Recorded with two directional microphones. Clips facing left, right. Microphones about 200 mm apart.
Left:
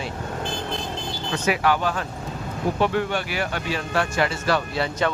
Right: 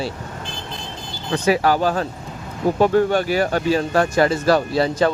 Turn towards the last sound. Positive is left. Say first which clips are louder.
# right 6 dB
turn(degrees=-35)  # may be behind; listen again after turning